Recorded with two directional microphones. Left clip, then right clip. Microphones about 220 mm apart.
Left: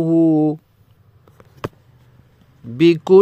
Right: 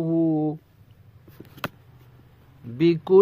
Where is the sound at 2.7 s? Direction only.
30° left (ahead or behind).